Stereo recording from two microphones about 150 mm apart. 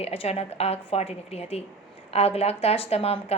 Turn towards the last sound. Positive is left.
turn(degrees=40)  # may be behind; listen again after turning